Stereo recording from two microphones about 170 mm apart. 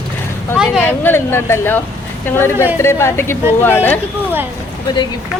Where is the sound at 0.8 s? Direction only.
10° left (ahead or behind).